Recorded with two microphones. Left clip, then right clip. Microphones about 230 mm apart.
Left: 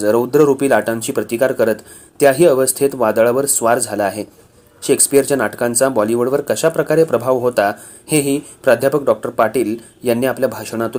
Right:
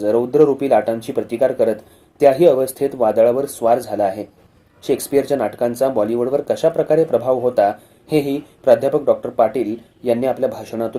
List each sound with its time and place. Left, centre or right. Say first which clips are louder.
0.0 s speech: left 1 dB; left